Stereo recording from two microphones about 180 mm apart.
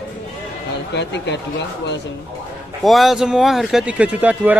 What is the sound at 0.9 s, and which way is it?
Speech, 75° left (ahead or behind).